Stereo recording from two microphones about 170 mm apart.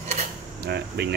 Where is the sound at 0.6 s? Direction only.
75° right (ahead or behind).